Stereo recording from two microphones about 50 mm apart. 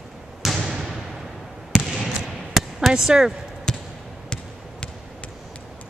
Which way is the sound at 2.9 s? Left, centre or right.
Centre.